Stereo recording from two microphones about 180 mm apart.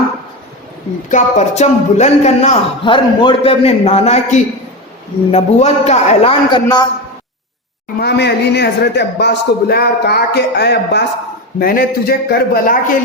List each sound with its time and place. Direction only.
1.1 s speech: 40° left (ahead or behind)
6.5 s a man's voice: 20° left (ahead or behind)
7.9 s speech: 70° left (ahead or behind)
11.6 s speech: 55° left (ahead or behind)